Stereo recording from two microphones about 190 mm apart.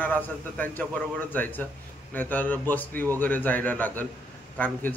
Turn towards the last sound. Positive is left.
turn(degrees=10)  # may be behind; listen again after turning